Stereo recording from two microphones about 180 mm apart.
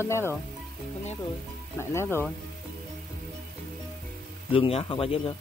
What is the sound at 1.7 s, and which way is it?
Speech, 15° left (ahead or behind).